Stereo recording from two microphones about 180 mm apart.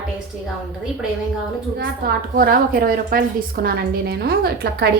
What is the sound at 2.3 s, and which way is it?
A woman's voice, 55° right (ahead or behind).